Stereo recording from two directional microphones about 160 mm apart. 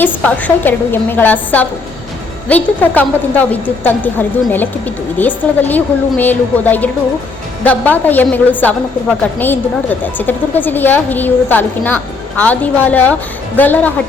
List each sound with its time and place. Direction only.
0.2 s a woman's voice: 10° left (ahead or behind)
5.2 s a woman's voice: 10° left (ahead or behind)